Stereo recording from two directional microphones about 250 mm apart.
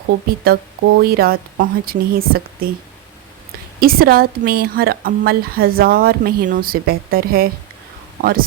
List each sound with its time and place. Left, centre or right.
0.4 s a woman's voice: right
3.8 s a woman's voice: right